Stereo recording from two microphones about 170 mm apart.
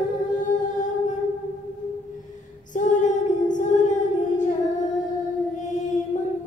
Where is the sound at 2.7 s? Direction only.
45° left (ahead or behind).